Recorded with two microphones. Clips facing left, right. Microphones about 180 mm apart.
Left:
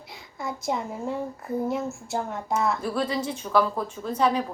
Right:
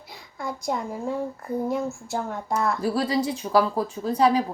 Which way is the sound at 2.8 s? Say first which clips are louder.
Right 3 dB; 35° right (ahead or behind).